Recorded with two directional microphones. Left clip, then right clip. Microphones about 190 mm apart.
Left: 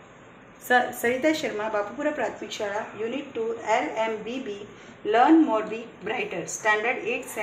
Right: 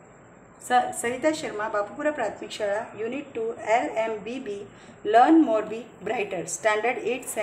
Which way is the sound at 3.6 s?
30° right (ahead or behind).